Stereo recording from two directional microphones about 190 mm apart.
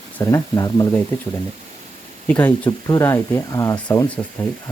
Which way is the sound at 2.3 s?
10° left (ahead or behind).